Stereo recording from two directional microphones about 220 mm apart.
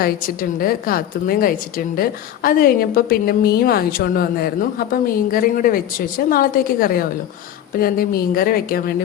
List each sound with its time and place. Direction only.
0.0 s a woman's voice: 40° left (ahead or behind)